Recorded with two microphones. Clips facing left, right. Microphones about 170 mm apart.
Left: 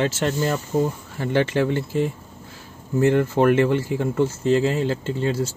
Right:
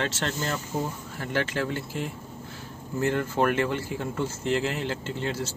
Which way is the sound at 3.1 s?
10° left (ahead or behind).